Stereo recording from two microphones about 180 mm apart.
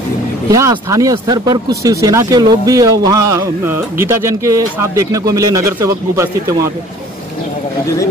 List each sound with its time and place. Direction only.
0.5 s speech: 15° right (ahead or behind)